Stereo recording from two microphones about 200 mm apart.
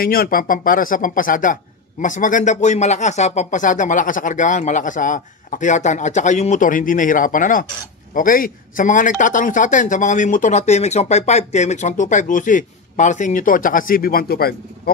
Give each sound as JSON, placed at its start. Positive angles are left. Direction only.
{"t": 0.0, "sound": "speech", "side_deg": 45}